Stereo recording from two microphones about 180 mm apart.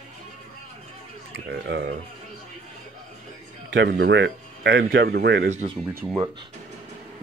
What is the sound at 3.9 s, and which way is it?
Speech, 70° right (ahead or behind).